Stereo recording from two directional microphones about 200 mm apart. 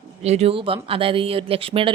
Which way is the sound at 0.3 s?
30° right (ahead or behind).